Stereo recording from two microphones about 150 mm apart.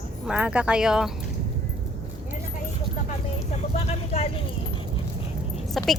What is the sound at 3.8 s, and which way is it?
Speech, 45° left (ahead or behind).